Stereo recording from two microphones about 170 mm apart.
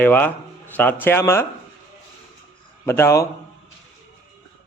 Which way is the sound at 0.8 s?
10° left (ahead or behind).